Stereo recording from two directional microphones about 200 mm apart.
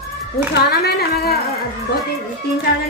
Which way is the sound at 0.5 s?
50° left (ahead or behind).